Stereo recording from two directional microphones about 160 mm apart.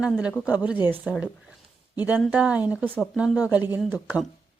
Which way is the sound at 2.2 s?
10° right (ahead or behind).